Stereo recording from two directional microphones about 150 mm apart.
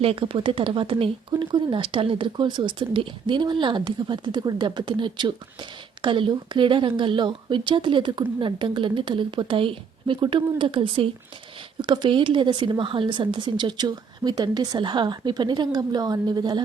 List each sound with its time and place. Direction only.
0.0 s a woman's voice: 40° right (ahead or behind)